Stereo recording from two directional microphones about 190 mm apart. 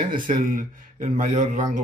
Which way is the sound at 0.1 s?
45° right (ahead or behind).